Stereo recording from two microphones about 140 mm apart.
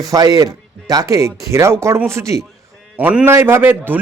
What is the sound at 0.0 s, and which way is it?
A man's voice, 25° right (ahead or behind).